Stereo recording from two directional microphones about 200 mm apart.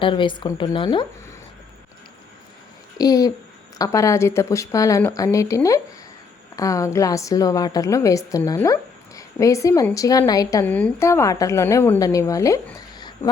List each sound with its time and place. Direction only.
0.0 s speech: 25° left (ahead or behind)
3.0 s a woman's voice: 20° left (ahead or behind)
13.0 s a sound: 20° left (ahead or behind)